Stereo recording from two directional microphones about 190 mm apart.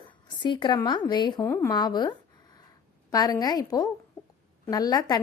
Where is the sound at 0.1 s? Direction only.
25° left (ahead or behind).